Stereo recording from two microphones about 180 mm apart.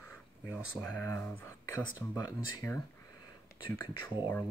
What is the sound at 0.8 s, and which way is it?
Speech, 10° left (ahead or behind).